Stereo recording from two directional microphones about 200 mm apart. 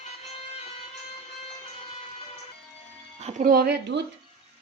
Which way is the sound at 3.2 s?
35° right (ahead or behind).